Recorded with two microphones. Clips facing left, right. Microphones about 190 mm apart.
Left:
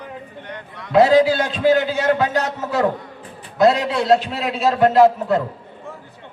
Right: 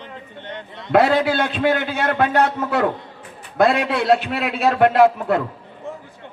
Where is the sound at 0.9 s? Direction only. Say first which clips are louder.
Left 3 dB; 60° right (ahead or behind).